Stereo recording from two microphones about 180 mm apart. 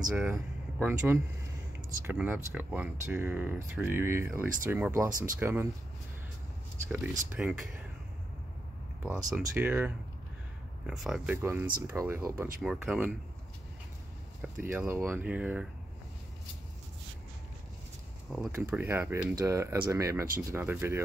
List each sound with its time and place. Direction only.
0.1 s speech: 10° right (ahead or behind)
6.9 s speech: 10° right (ahead or behind)
9.0 s speech: 5° right (ahead or behind)
12.6 s speech: 5° right (ahead or behind)
14.4 s speech: 10° right (ahead or behind)
18.6 s speech: 10° right (ahead or behind)